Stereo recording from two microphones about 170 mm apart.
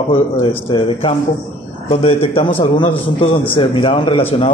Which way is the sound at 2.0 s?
30° left (ahead or behind).